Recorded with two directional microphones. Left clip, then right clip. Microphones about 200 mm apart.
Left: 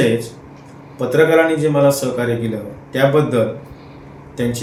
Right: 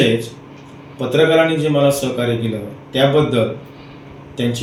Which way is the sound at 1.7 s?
5° right (ahead or behind).